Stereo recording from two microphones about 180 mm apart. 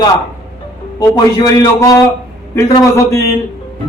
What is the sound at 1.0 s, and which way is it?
A man's voice, 20° left (ahead or behind).